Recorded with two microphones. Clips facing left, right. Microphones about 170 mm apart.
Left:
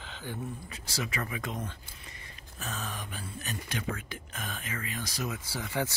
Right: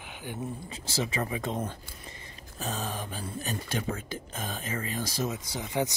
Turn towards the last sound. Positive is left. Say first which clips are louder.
# right 3 dB
turn(degrees=-20)  # may be behind; listen again after turning